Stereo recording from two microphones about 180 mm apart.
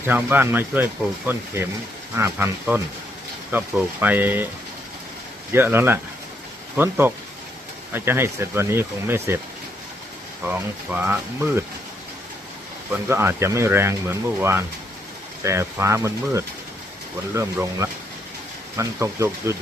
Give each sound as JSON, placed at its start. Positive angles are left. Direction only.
{"t": 0.0, "sound": "speech", "side_deg": -10}
{"t": 5.5, "sound": "speech", "side_deg": -10}
{"t": 10.5, "sound": "speech", "side_deg": -10}
{"t": 13.1, "sound": "speech", "side_deg": -15}